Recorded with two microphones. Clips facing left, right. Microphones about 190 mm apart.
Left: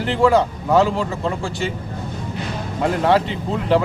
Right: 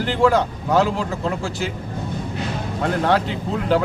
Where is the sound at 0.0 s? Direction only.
Centre (ahead or behind).